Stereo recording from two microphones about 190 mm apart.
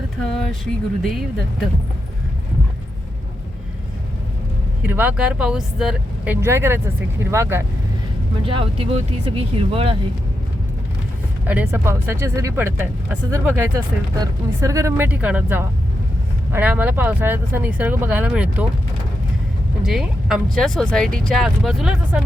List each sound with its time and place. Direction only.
0.3 s speech: centre (ahead or behind)
4.9 s speech: 10° right (ahead or behind)
8.4 s speech: 25° right (ahead or behind)
11.4 s speech: 10° right (ahead or behind)
19.8 s speech: centre (ahead or behind)